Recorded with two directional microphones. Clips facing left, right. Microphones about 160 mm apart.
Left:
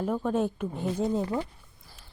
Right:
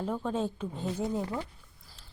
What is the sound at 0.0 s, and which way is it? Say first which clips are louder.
A woman's voice: left 4 dB; 10° left (ahead or behind).